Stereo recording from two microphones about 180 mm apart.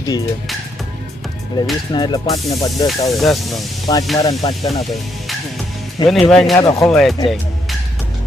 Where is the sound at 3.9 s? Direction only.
20° left (ahead or behind).